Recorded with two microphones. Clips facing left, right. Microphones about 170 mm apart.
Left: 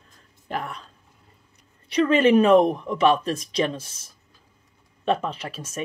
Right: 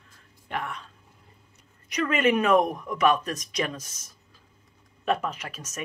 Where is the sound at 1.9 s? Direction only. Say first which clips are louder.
Left 6 dB; 30° left (ahead or behind).